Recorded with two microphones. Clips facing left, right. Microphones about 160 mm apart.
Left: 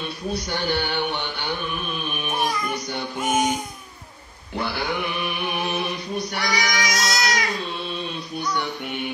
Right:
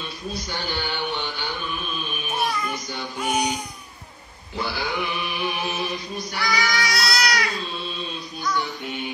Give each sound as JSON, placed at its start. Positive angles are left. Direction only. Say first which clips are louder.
{"t": 0.3, "sound": "a man's voice", "louder": "left 6 dB", "side_deg": 60}
{"t": 2.3, "sound": "child singing", "louder": "even", "side_deg": 45}
{"t": 4.6, "sound": "chant", "louder": "left 1 dB", "side_deg": 55}
{"t": 6.4, "sound": "child singing", "louder": "right 3 dB", "side_deg": 20}
{"t": 8.5, "sound": "music", "louder": "left 1 dB", "side_deg": 65}